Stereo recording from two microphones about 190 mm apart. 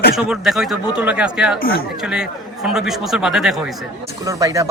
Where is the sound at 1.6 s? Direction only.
50° left (ahead or behind).